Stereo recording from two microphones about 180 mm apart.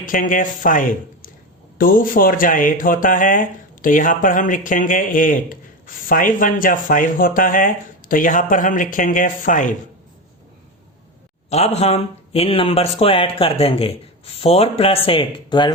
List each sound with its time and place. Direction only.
0.0 s speech: 45° left (ahead or behind)
11.4 s speech: 35° left (ahead or behind)